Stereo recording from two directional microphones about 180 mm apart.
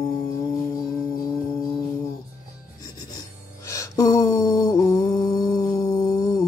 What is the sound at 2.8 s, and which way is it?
Music, 20° left (ahead or behind).